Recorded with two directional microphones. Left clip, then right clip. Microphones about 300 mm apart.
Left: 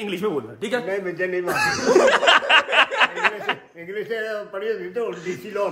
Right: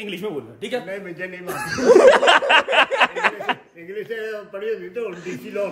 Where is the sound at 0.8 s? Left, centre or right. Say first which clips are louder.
Left 6 dB; left.